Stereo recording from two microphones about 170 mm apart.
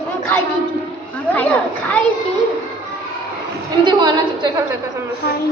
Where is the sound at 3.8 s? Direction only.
25° right (ahead or behind).